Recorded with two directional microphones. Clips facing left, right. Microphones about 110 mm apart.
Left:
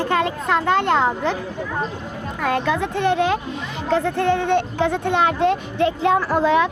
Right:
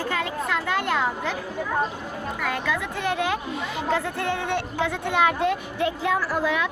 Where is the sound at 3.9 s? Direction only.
20° left (ahead or behind).